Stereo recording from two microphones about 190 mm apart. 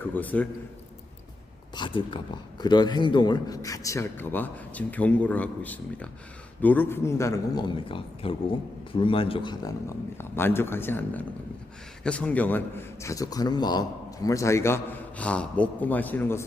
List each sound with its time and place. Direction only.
0.0 s a man's voice: 10° left (ahead or behind)
1.7 s a man's voice: 25° left (ahead or behind)
10.2 s a man's voice: 10° left (ahead or behind)